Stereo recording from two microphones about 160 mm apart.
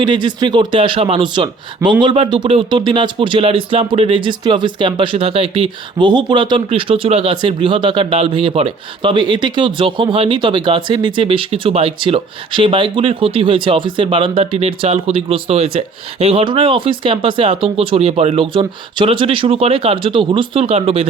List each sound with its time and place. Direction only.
0.0 s speech: 30° right (ahead or behind)